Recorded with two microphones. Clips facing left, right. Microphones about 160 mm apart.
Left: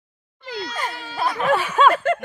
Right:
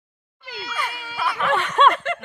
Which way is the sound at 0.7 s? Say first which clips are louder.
Right 2 dB; 40° left (ahead or behind).